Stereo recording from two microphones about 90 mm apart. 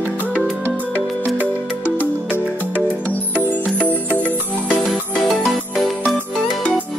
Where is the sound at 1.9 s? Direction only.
20° left (ahead or behind).